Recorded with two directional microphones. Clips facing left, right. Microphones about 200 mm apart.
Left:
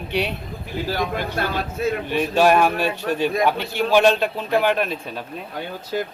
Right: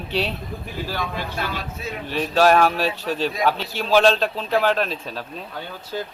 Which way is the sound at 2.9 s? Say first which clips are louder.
Left 3 dB; 55° left (ahead or behind).